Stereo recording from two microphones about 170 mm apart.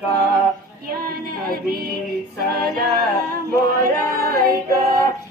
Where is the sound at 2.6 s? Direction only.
65° right (ahead or behind).